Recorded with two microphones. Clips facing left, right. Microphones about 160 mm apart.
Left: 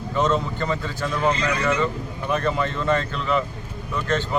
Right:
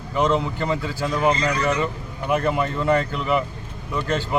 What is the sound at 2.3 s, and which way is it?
Speech, 15° right (ahead or behind).